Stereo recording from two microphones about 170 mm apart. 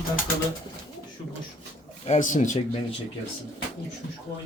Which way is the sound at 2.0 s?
45° left (ahead or behind).